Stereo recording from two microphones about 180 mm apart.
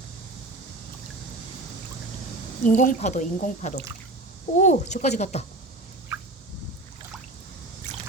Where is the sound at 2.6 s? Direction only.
45° left (ahead or behind).